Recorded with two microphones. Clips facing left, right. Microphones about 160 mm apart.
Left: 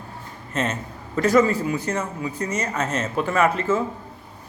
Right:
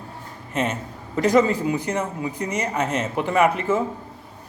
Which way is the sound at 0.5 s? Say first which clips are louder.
Right 1 dB; 15° right (ahead or behind).